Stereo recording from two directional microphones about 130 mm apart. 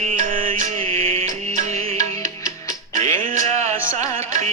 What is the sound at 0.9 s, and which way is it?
Music, 50° right (ahead or behind).